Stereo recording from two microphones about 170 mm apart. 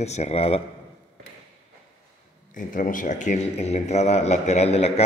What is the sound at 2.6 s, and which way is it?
A man's voice, 50° left (ahead or behind).